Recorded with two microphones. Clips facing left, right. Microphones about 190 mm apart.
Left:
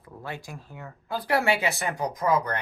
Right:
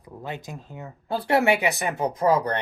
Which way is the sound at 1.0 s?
30° right (ahead or behind).